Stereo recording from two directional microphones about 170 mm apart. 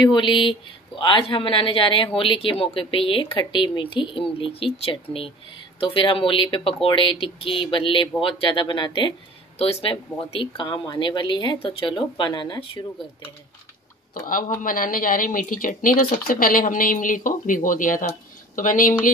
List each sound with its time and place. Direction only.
0.0 s speech: 30° left (ahead or behind)
14.1 s a woman's voice: 55° left (ahead or behind)